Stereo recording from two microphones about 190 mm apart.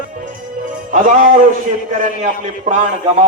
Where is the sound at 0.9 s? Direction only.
45° right (ahead or behind).